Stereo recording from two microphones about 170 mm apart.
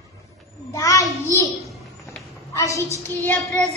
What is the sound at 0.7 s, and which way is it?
Speech, 20° left (ahead or behind).